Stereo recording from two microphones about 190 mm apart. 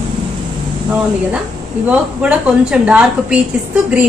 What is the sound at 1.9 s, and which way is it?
A woman's voice, 5° right (ahead or behind).